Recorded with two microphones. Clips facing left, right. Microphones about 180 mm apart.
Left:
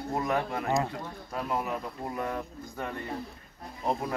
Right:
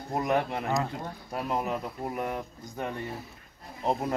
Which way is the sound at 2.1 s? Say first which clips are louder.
Even; 15° right (ahead or behind).